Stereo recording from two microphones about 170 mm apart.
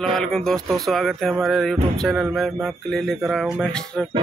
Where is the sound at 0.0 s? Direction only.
Centre (ahead or behind).